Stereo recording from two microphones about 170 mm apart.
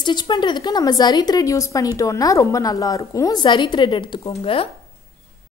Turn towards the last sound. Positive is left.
turn(degrees=35)  # may be behind; listen again after turning